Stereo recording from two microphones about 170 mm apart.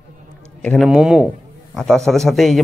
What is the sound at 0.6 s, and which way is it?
Speech, 5° left (ahead or behind).